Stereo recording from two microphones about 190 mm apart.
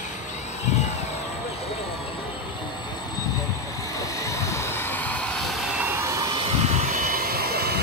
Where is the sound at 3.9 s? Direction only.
15° left (ahead or behind).